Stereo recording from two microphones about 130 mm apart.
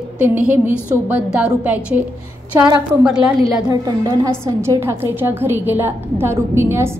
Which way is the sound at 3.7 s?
25° right (ahead or behind).